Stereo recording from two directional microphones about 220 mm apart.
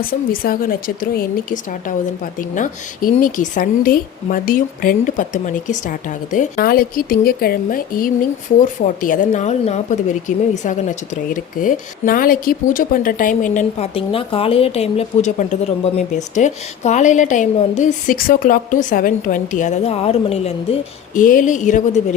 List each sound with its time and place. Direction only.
0.1 s a woman's voice: 40° left (ahead or behind)
21.2 s a woman's voice: 35° left (ahead or behind)